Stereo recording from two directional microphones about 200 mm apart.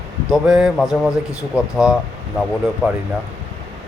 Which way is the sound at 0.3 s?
Centre (ahead or behind).